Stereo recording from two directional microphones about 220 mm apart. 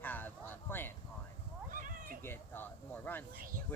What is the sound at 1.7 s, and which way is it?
Cat, 40° right (ahead or behind).